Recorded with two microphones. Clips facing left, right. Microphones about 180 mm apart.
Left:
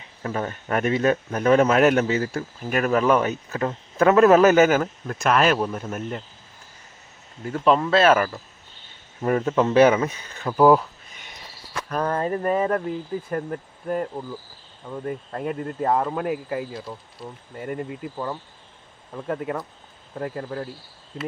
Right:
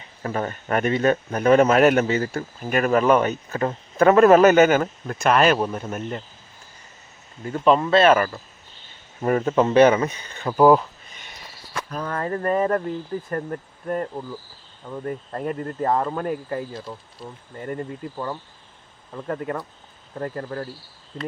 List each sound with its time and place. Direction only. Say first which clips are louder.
0.2 s speech: right 1 dB; centre (ahead or behind)
7.4 s speech: right 1 dB; centre (ahead or behind)
12.1 s speech: right 1 dB; 20° left (ahead or behind)
12.4 s speech: right 5 dB; 5° left (ahead or behind)